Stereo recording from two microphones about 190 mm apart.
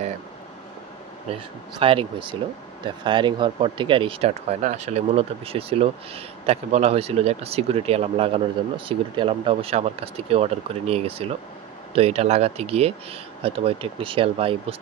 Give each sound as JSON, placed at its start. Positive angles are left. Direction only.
{"t": 1.3, "sound": "speech", "side_deg": -30}